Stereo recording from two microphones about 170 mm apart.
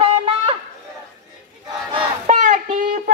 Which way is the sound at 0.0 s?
35° right (ahead or behind).